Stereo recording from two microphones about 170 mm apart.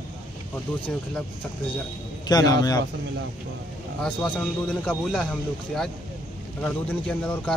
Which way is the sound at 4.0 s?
5° left (ahead or behind).